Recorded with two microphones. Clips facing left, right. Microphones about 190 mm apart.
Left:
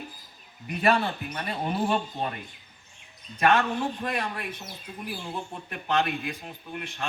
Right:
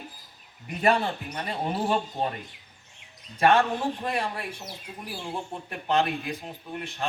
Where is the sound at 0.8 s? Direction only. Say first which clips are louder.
Even; 25° right (ahead or behind).